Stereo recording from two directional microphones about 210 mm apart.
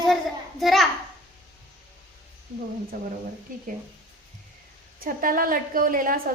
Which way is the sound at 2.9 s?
45° right (ahead or behind).